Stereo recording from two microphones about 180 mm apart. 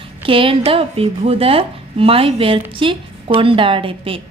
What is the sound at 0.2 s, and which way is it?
A woman's voice, 30° right (ahead or behind).